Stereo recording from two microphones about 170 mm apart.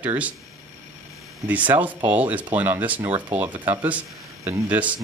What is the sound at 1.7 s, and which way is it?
Speech, 10° right (ahead or behind).